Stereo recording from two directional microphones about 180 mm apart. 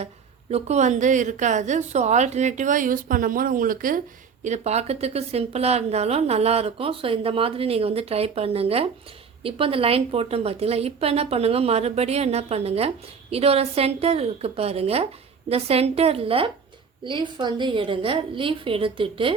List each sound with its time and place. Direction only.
0.5 s a woman's voice: 40° right (ahead or behind)
4.4 s a woman's voice: 40° right (ahead or behind)